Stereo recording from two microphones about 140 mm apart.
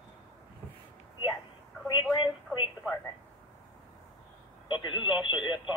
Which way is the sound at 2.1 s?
40° left (ahead or behind).